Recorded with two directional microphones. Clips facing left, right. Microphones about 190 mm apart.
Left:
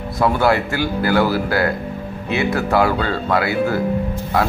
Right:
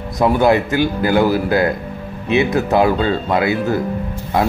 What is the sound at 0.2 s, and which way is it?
Speech, 20° right (ahead or behind).